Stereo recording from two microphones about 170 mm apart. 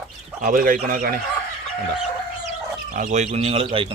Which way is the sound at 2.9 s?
50° right (ahead or behind).